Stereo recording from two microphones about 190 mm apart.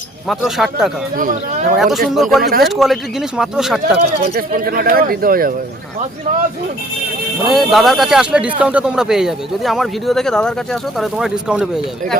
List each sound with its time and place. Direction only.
0.3 s speech: centre (ahead or behind)
1.1 s speech: 45° right (ahead or behind)
1.7 s speech: centre (ahead or behind)
2.4 s speech: 55° right (ahead or behind)
2.6 s speech: centre (ahead or behind)
4.2 s speech: 50° right (ahead or behind)
7.4 s speech: centre (ahead or behind)